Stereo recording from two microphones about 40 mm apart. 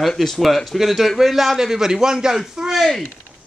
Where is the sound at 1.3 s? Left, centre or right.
Centre.